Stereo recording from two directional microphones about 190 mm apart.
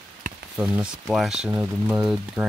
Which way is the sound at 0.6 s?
5° right (ahead or behind).